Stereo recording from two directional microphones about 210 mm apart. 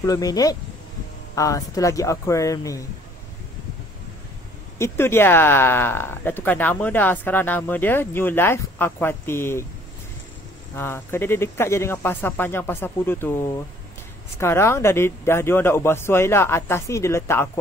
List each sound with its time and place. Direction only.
0.0 s speech: 15° left (ahead or behind)
4.7 s speech: 10° left (ahead or behind)
10.8 s speech: 10° left (ahead or behind)
14.4 s speech: 10° left (ahead or behind)